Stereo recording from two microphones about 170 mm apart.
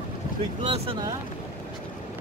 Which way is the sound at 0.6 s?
30° right (ahead or behind).